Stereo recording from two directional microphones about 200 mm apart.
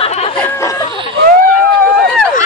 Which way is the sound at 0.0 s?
30° left (ahead or behind).